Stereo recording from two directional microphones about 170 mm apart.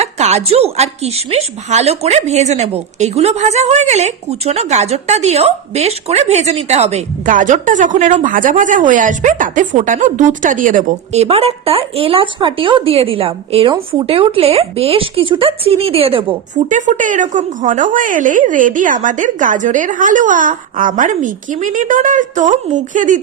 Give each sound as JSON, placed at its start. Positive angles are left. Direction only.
{"t": 0.0, "sound": "a woman's voice", "side_deg": -40}
{"t": 16.6, "sound": "a woman's voice", "side_deg": -45}